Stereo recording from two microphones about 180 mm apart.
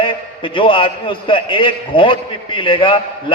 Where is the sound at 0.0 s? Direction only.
30° left (ahead or behind).